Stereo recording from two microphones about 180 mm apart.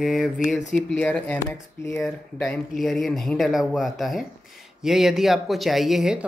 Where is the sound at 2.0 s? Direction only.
Centre (ahead or behind).